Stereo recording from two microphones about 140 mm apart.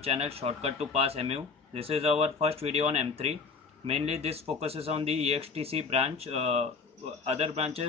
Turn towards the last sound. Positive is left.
turn(degrees=-50)  # may be behind; listen again after turning